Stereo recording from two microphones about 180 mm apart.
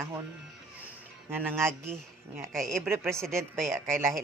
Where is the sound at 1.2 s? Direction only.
15° right (ahead or behind).